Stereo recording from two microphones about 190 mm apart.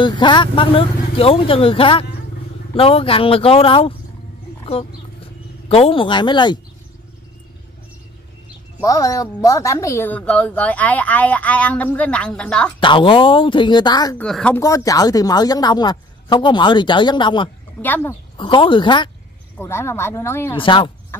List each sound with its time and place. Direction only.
0.0 s a woman's voice: 25° left (ahead or behind)
8.8 s speech: 15° left (ahead or behind)
12.8 s a woman's voice: 25° left (ahead or behind)
14.1 s speech: 5° left (ahead or behind)
14.6 s a woman's voice: 15° left (ahead or behind)
17.8 s speech: 10° left (ahead or behind)
18.4 s a woman's voice: 25° left (ahead or behind)
19.6 s speech: 15° left (ahead or behind)
20.5 s a woman's voice: 25° left (ahead or behind)
21.1 s a sound: 10° left (ahead or behind)